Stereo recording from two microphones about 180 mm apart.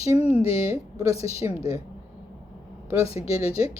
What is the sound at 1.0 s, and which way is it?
Speech, 15° right (ahead or behind).